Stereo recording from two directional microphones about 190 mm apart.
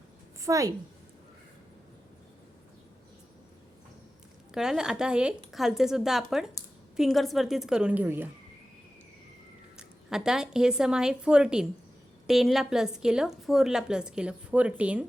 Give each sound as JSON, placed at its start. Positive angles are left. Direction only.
{"t": 0.4, "sound": "a woman's voice", "side_deg": -15}
{"t": 4.5, "sound": "a woman's voice", "side_deg": 0}
{"t": 9.7, "sound": "a woman's voice", "side_deg": -5}